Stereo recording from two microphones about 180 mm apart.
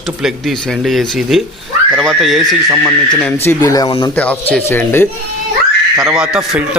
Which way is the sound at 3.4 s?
15° left (ahead or behind).